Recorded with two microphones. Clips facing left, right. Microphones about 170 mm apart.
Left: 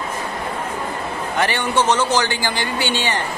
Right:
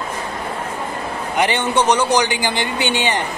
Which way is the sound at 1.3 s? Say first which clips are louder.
Right 2 dB; 20° right (ahead or behind).